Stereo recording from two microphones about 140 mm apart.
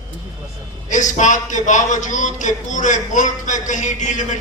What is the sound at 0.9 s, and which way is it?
A man's voice, 60° left (ahead or behind).